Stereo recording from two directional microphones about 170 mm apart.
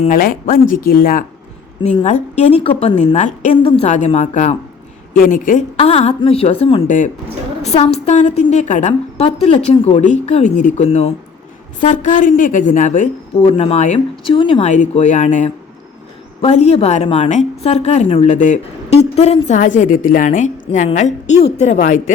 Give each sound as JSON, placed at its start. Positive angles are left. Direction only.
{"t": 0.0, "sound": "speech", "side_deg": 55}
{"t": 1.8, "sound": "a woman's voice", "side_deg": 40}
{"t": 3.6, "sound": "a woman's voice", "side_deg": 30}
{"t": 3.8, "sound": "a woman's voice", "side_deg": 40}
{"t": 5.1, "sound": "a woman's voice", "side_deg": 55}
{"t": 5.7, "sound": "a woman's voice", "side_deg": 35}
{"t": 6.8, "sound": "a woman's voice", "side_deg": 50}
{"t": 7.6, "sound": "a woman's voice", "side_deg": 35}
{"t": 12.0, "sound": "a woman's voice", "side_deg": 50}
{"t": 13.4, "sound": "a woman's voice", "side_deg": 35}
{"t": 14.3, "sound": "speech", "side_deg": 30}
{"t": 14.7, "sound": "a woman's voice", "side_deg": 45}
{"t": 18.3, "sound": "a woman's voice", "side_deg": 45}